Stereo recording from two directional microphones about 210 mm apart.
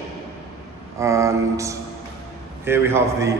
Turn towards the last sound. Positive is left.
turn(degrees=-10)  # may be behind; listen again after turning